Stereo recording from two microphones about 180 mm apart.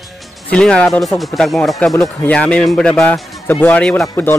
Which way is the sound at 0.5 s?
5° left (ahead or behind).